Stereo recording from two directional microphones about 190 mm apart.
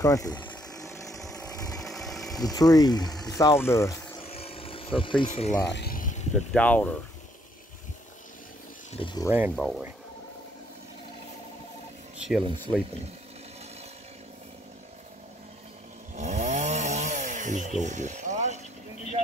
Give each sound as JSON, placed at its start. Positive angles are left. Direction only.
{"t": 0.0, "sound": "speech", "side_deg": 20}
{"t": 1.1, "sound": "a sound", "side_deg": 0}
{"t": 1.8, "sound": "engine", "side_deg": 0}
{"t": 2.4, "sound": "speech", "side_deg": 20}
{"t": 4.2, "sound": "a sound", "side_deg": 30}
{"t": 5.3, "sound": "speech", "side_deg": 40}
{"t": 5.7, "sound": "a sound", "side_deg": 55}
{"t": 6.3, "sound": "speech", "side_deg": 5}
{"t": 8.9, "sound": "speech", "side_deg": 25}
{"t": 9.6, "sound": "speech", "side_deg": -5}
{"t": 12.2, "sound": "speech", "side_deg": 0}
{"t": 16.2, "sound": "chainsaw", "side_deg": -40}
{"t": 17.8, "sound": "a sound", "side_deg": -40}